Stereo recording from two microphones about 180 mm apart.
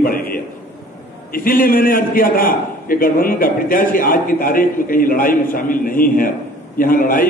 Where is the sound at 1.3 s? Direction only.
50° left (ahead or behind).